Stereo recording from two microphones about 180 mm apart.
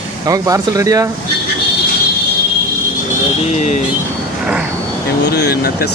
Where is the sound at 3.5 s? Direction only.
40° left (ahead or behind).